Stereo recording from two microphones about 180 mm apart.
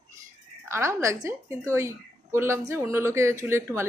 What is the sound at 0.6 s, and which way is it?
Speech, 15° right (ahead or behind).